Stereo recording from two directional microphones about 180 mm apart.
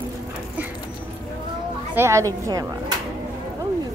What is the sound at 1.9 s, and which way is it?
Speech, 15° right (ahead or behind).